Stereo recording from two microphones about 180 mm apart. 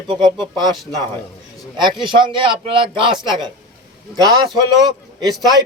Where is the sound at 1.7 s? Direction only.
25° right (ahead or behind).